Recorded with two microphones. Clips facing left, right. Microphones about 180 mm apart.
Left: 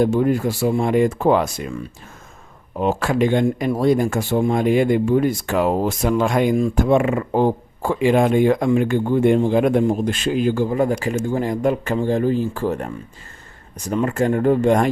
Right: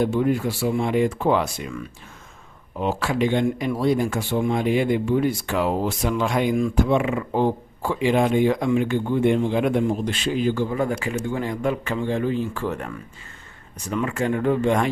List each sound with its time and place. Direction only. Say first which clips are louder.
0.0 s speech: left 4 dB; 45° left (ahead or behind)
2.7 s a man's voice: left 4 dB; 45° left (ahead or behind)